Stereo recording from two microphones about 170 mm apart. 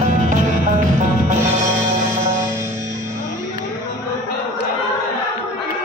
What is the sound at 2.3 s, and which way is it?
Music, 15° right (ahead or behind).